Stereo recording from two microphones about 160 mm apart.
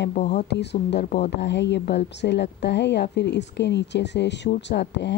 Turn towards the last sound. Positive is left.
turn(degrees=90)